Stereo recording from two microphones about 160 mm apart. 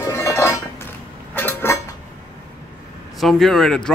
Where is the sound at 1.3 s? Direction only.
15° left (ahead or behind).